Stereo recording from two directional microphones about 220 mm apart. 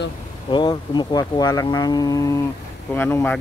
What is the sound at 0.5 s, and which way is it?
Speech, 20° left (ahead or behind).